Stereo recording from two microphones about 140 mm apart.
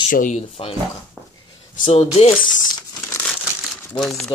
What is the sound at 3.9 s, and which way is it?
Speech, centre (ahead or behind).